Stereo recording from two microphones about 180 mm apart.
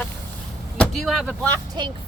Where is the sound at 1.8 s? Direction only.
25° right (ahead or behind).